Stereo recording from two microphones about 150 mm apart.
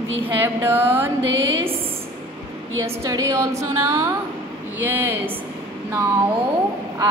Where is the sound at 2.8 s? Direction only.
20° right (ahead or behind).